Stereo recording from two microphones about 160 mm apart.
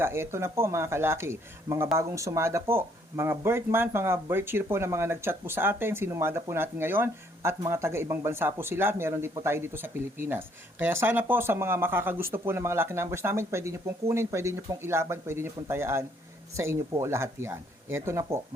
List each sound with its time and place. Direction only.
0.0 s speech: 15° right (ahead or behind)